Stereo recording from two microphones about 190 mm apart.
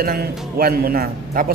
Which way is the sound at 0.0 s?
50° right (ahead or behind).